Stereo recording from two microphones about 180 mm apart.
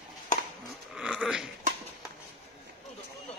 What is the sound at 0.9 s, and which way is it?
Dog, 5° right (ahead or behind).